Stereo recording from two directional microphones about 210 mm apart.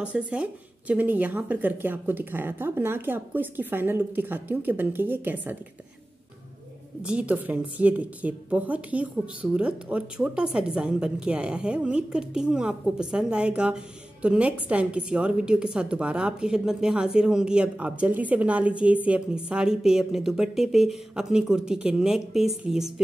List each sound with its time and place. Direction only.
0.0 s a woman's voice: 5° right (ahead or behind)
7.0 s a woman's voice: 5° right (ahead or behind)